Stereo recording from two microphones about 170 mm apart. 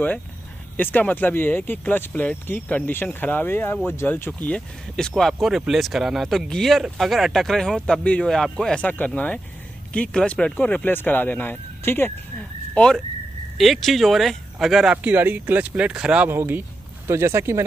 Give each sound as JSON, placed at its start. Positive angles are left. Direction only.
{"t": 0.7, "sound": "speech", "side_deg": 10}